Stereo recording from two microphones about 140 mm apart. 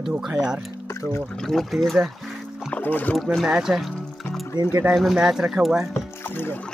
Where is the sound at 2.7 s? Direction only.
10° left (ahead or behind).